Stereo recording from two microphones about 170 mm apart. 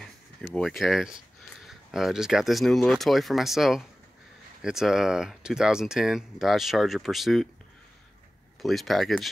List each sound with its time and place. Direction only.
0.0 s speech: centre (ahead or behind)
8.6 s speech: centre (ahead or behind)